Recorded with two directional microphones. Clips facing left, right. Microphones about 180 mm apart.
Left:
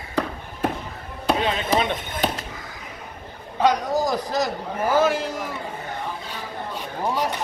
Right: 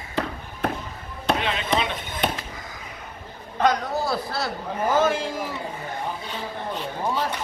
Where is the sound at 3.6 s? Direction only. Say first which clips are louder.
Left 2 dB; 10° left (ahead or behind).